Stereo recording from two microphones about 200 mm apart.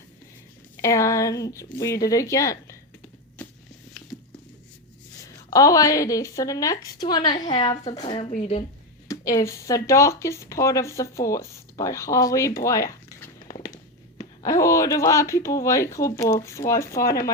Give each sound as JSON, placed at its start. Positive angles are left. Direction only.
{"t": 0.8, "sound": "speech", "side_deg": 15}
{"t": 5.2, "sound": "a woman's voice", "side_deg": 15}
{"t": 9.0, "sound": "speech", "side_deg": 15}
{"t": 12.5, "sound": "zipper", "side_deg": 15}
{"t": 14.2, "sound": "speech", "side_deg": 15}